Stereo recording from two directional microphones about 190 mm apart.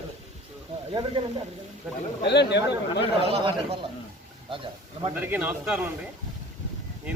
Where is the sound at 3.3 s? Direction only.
30° right (ahead or behind).